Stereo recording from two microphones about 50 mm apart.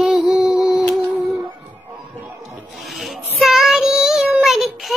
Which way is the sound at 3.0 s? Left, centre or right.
Centre.